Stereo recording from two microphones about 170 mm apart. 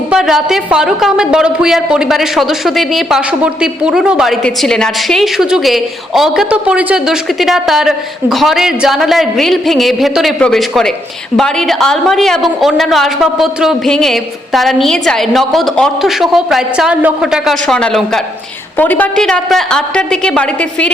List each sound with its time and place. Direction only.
0.1 s a man's voice: 5° right (ahead or behind)